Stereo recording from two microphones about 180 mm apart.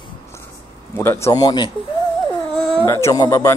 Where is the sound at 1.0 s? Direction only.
15° left (ahead or behind).